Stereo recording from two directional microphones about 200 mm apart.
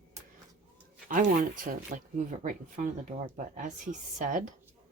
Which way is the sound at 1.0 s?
45° right (ahead or behind).